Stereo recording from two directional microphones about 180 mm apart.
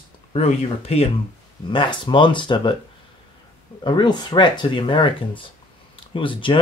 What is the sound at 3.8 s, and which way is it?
Speech, 25° left (ahead or behind).